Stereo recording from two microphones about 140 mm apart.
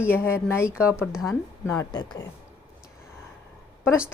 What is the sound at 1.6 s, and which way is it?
Speech, 20° left (ahead or behind).